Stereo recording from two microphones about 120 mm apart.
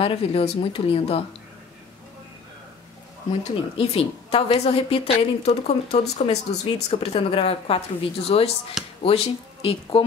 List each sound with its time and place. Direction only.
0.0 s speech: 55° left (ahead or behind)
3.3 s a woman's voice: 60° left (ahead or behind)
7.0 s speech: 45° left (ahead or behind)